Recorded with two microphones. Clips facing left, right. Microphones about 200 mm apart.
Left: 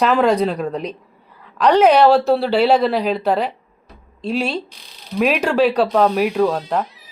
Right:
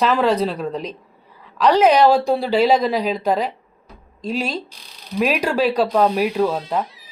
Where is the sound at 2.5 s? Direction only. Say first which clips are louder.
Even; 10° left (ahead or behind).